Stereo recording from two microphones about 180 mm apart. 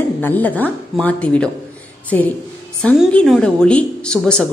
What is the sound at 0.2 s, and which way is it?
Speech, 10° left (ahead or behind).